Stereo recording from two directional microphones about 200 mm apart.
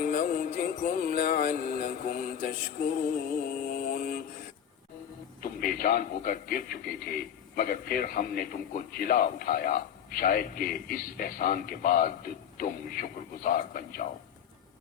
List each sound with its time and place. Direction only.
0.0 s music: 45° left (ahead or behind)
3.6 s mantra: 45° left (ahead or behind)
5.4 s a man's voice: 45° left (ahead or behind)